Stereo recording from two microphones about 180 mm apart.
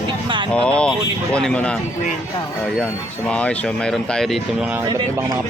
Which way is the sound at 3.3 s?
5° left (ahead or behind).